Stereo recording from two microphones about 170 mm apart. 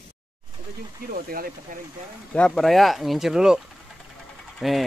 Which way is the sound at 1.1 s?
60° right (ahead or behind).